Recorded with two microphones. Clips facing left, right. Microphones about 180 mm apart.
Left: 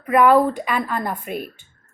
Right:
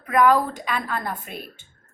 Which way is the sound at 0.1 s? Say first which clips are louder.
Left 4 dB; 5° left (ahead or behind).